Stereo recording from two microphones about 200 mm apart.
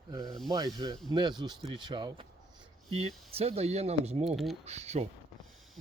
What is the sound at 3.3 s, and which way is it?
Speech, 30° right (ahead or behind).